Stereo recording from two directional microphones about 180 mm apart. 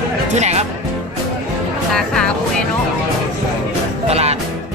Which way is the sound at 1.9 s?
5° left (ahead or behind).